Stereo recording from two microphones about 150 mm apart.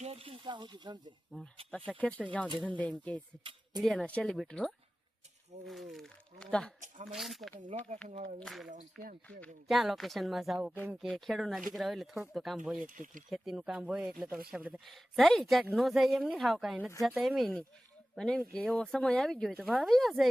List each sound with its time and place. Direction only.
0.0 s speech: 40° right (ahead or behind)
1.3 s speech: centre (ahead or behind)
6.7 s speech: 55° right (ahead or behind)
7.1 s speech: centre (ahead or behind)
8.0 s speech: 55° right (ahead or behind)
8.4 s speech: centre (ahead or behind)
8.7 s speech: 65° right (ahead or behind)
9.4 s speech: centre (ahead or behind)
12.9 s speech: 60° right (ahead or behind)
13.3 s speech: centre (ahead or behind)
14.8 s speech: centre (ahead or behind)